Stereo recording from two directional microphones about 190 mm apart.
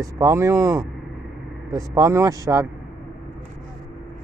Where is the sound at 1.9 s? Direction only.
15° right (ahead or behind).